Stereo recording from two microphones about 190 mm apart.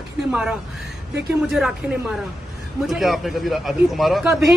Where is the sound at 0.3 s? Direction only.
5° right (ahead or behind).